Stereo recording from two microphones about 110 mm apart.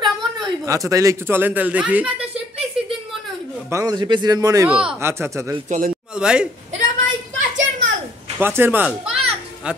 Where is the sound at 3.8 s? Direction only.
40° right (ahead or behind).